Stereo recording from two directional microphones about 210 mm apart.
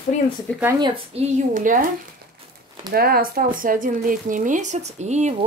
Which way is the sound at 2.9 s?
45° right (ahead or behind).